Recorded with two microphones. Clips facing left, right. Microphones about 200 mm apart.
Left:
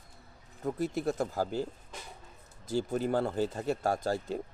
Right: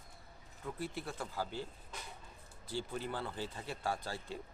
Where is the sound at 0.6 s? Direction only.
45° left (ahead or behind).